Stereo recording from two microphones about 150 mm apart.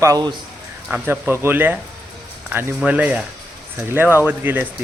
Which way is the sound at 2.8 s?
10° right (ahead or behind).